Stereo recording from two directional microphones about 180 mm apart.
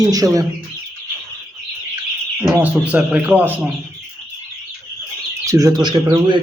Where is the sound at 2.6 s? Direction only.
10° right (ahead or behind).